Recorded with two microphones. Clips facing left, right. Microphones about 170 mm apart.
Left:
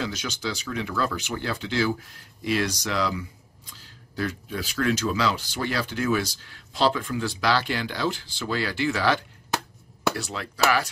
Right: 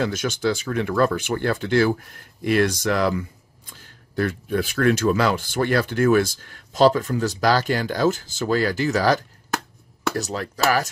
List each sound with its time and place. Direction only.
0.0 s speech: 50° right (ahead or behind)